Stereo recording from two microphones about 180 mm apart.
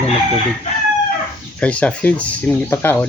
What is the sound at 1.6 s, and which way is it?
Speech, 5° left (ahead or behind).